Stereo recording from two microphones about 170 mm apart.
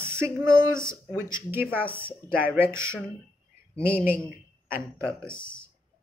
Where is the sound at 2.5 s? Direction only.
15° right (ahead or behind).